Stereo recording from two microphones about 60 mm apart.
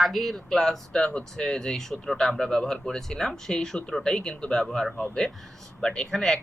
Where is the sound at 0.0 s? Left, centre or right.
Centre.